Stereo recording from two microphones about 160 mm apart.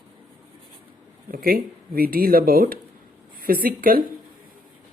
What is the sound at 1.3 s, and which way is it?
Speech, 65° right (ahead or behind).